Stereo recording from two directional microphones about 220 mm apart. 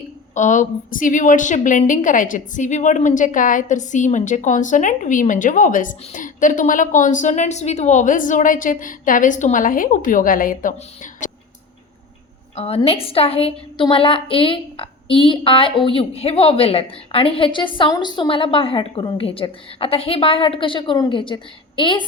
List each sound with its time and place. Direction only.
0.3 s a woman's voice: 35° left (ahead or behind)
12.5 s a woman's voice: 25° left (ahead or behind)